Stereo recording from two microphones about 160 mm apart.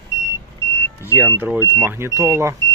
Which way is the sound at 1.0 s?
15° right (ahead or behind).